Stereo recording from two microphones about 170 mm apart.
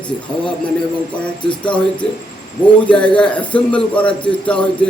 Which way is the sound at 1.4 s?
30° left (ahead or behind).